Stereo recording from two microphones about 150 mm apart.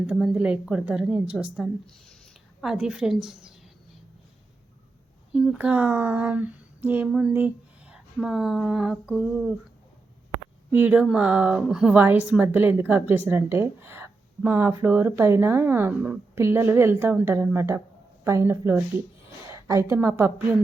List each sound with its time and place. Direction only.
0.1 s a woman's voice: 5° right (ahead or behind)
5.3 s speech: 5° right (ahead or behind)
10.7 s a woman's voice: 10° right (ahead or behind)